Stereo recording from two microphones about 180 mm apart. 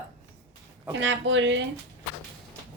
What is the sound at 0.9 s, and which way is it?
Speech, 90° right.